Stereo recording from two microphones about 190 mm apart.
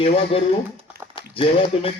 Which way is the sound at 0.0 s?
30° left (ahead or behind).